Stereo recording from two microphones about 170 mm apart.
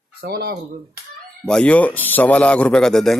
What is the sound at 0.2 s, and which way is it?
Speech, 70° right (ahead or behind).